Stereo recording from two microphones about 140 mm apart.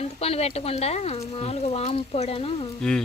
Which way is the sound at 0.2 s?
45° left (ahead or behind).